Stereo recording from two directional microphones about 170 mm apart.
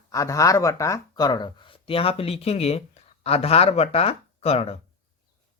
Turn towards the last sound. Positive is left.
turn(degrees=35)  # may be behind; listen again after turning